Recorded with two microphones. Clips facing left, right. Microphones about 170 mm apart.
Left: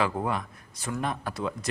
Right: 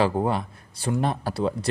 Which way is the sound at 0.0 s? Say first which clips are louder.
Right 5 dB; 30° right (ahead or behind).